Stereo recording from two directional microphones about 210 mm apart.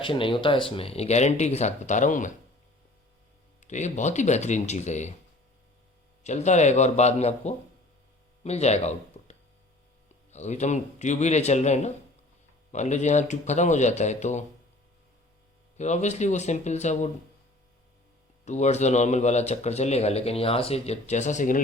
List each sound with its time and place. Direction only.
0.0 s speech: 25° left (ahead or behind)
3.6 s speech: 35° left (ahead or behind)
6.2 s speech: 35° left (ahead or behind)
10.3 s speech: 35° left (ahead or behind)
15.8 s speech: 35° left (ahead or behind)
18.4 s speech: 35° left (ahead or behind)